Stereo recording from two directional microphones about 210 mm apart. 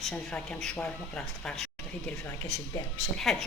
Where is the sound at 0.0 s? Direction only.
5° left (ahead or behind).